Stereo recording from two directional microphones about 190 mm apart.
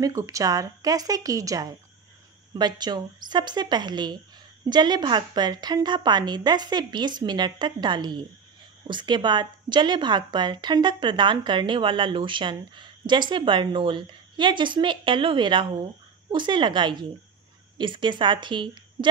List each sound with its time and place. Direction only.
0.0 s a woman's voice: 15° right (ahead or behind)